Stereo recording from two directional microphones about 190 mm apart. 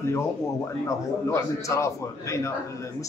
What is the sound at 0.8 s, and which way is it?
A man's voice, 15° left (ahead or behind).